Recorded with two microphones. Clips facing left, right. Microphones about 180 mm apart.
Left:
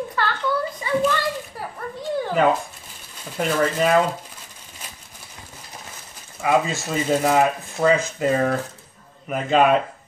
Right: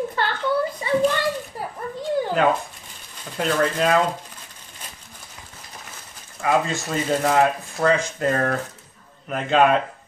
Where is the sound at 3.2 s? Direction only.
5° left (ahead or behind).